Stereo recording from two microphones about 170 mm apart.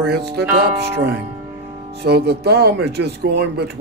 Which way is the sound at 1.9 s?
75° right (ahead or behind).